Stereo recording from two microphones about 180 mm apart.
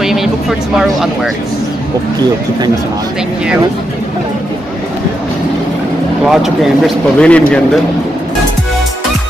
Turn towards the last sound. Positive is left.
turn(degrees=5)  # may be behind; listen again after turning